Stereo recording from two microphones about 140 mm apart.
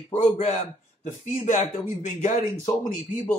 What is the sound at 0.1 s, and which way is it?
A man's voice, 60° left (ahead or behind).